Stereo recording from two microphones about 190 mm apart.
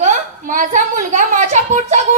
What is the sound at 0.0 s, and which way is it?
A woman's voice, 40° right (ahead or behind).